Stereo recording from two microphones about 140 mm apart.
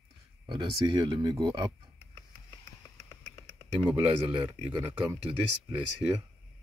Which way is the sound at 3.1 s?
20° left (ahead or behind).